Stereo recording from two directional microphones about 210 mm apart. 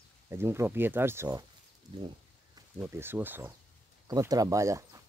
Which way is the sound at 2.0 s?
20° right (ahead or behind).